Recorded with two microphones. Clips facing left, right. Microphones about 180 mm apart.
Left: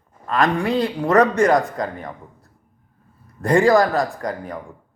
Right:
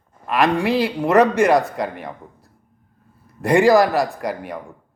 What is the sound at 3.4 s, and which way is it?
Speech, 10° right (ahead or behind).